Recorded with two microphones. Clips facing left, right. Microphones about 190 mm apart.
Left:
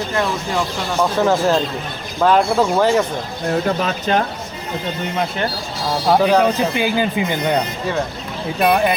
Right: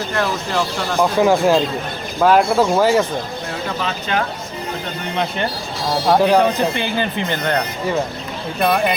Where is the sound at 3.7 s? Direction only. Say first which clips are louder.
Left 4 dB; 40° left (ahead or behind).